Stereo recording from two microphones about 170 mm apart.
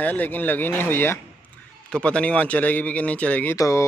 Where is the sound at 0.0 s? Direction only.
10° left (ahead or behind).